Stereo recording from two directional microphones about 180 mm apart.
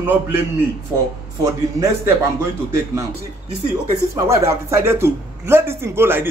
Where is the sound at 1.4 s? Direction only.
15° right (ahead or behind).